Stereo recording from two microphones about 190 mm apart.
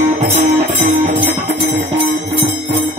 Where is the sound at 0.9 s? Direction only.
40° right (ahead or behind).